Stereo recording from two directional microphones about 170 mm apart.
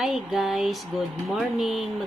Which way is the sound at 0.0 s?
Centre (ahead or behind).